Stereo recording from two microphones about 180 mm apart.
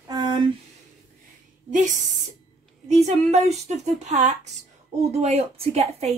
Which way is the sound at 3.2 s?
35° right (ahead or behind).